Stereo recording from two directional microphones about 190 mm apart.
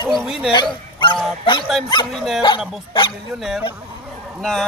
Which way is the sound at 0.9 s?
25° left (ahead or behind).